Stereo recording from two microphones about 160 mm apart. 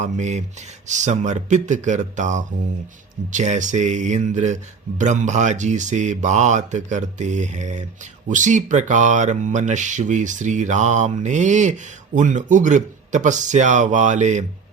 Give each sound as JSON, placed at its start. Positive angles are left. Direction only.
{"t": 0.0, "sound": "speech", "side_deg": -45}